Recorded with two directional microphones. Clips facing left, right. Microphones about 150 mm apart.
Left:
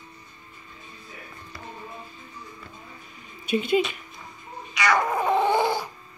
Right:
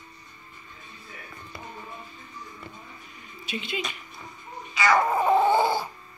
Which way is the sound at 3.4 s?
50° left (ahead or behind).